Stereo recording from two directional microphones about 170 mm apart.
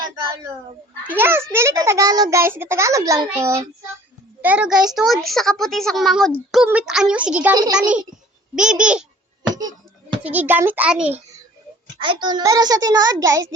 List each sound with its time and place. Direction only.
1.0 s a child's voice: 10° right (ahead or behind)
4.4 s a woman's voice: 5° right (ahead or behind)
7.5 s a child's voice: 25° right (ahead or behind)
8.5 s a woman's voice: 5° right (ahead or behind)
10.2 s a child's voice: 10° right (ahead or behind)
11.9 s a child's voice: 30° right (ahead or behind)